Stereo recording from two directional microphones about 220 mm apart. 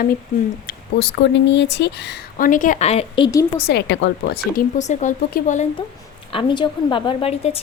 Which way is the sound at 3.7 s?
50° left (ahead or behind).